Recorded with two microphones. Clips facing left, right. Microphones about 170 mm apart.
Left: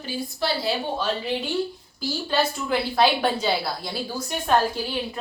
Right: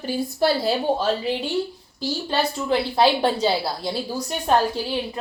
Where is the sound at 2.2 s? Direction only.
30° right (ahead or behind).